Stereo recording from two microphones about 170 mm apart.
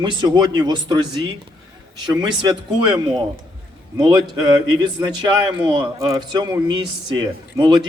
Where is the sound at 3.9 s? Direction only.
25° right (ahead or behind).